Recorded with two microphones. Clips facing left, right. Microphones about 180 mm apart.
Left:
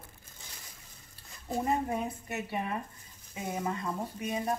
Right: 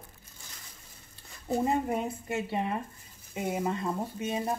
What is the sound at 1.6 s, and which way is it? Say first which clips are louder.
Speech: right 1 dB; 25° right (ahead or behind).